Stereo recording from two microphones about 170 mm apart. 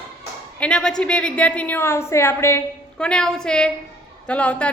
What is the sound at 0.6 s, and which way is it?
A woman's voice, 5° left (ahead or behind).